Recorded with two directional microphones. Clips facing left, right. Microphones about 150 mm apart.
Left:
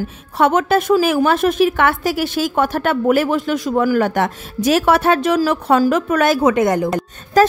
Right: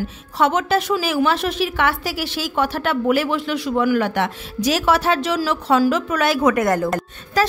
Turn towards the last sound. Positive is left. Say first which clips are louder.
# left 6 dB
turn(degrees=50)  # may be behind; listen again after turning